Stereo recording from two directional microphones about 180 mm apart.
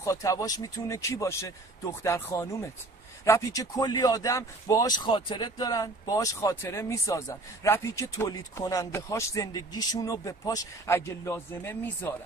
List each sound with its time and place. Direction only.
0.0 s speech: 15° left (ahead or behind)